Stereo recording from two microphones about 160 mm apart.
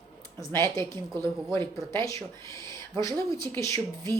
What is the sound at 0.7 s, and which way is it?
Speech, 25° right (ahead or behind).